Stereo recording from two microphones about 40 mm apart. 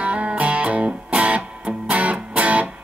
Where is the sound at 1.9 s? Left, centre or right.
Right.